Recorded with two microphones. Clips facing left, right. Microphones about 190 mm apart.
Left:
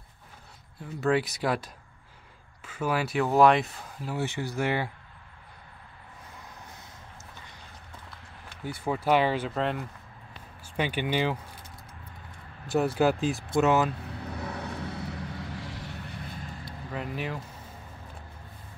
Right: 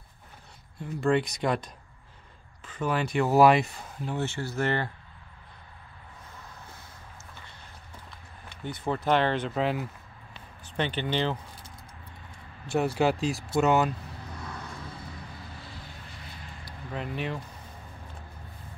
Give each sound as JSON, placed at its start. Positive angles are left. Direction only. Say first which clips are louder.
{"t": 1.0, "sound": "speech", "louder": "right 1 dB", "side_deg": 5}
{"t": 8.6, "sound": "speech", "louder": "left 1 dB", "side_deg": 10}
{"t": 10.8, "sound": "speech", "louder": "left 1 dB", "side_deg": 10}
{"t": 12.6, "sound": "speech", "louder": "left 1 dB", "side_deg": 0}
{"t": 14.2, "sound": "vehicle", "louder": "left 7 dB", "side_deg": 65}
{"t": 16.9, "sound": "speech", "louder": "right 1 dB", "side_deg": 0}